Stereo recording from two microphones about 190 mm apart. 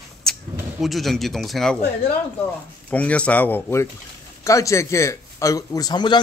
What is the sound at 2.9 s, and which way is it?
A man's voice, 5° left (ahead or behind).